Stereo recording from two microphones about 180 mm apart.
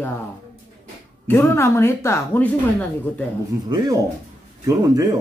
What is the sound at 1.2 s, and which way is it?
Speech, 15° left (ahead or behind).